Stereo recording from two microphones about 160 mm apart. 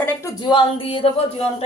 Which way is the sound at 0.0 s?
20° left (ahead or behind).